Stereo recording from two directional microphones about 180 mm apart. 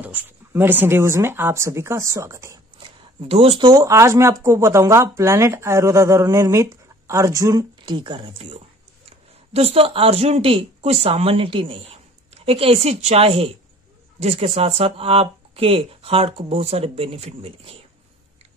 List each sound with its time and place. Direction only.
0.0 s speech: 10° right (ahead or behind)
3.2 s speech: 30° right (ahead or behind)
9.5 s speech: 35° right (ahead or behind)